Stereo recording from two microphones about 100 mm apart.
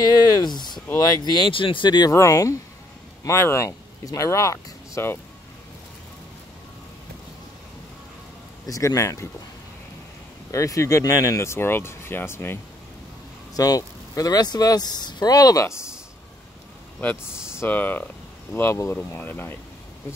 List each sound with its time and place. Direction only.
0.0 s speech: 45° left (ahead or behind)
1.5 s speech: 60° left (ahead or behind)
2.1 s speech: 35° left (ahead or behind)
8.6 s speech: 35° left (ahead or behind)
10.5 s speech: 30° left (ahead or behind)
13.6 s speech: 35° left (ahead or behind)
17.6 s speech: 20° left (ahead or behind)